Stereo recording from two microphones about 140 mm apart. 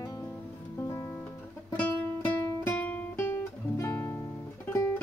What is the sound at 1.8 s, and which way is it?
Music, 15° left (ahead or behind).